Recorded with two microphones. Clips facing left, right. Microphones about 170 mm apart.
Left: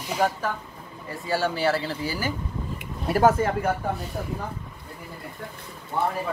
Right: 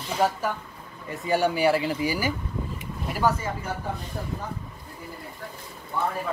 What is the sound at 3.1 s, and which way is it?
Speech, 55° left (ahead or behind).